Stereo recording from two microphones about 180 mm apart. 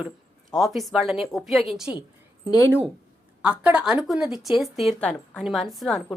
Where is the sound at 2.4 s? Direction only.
20° left (ahead or behind).